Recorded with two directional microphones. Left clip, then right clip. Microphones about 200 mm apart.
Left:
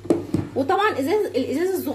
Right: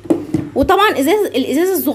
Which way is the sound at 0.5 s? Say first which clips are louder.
Right 8 dB; 35° right (ahead or behind).